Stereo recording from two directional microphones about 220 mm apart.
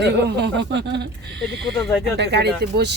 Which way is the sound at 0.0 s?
50° right (ahead or behind).